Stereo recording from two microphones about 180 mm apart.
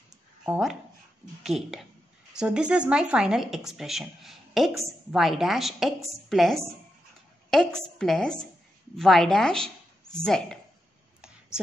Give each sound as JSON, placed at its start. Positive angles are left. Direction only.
{"t": 0.5, "sound": "speech", "side_deg": 0}